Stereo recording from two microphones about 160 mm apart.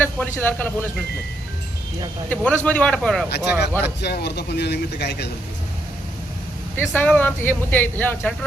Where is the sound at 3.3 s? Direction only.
90° left.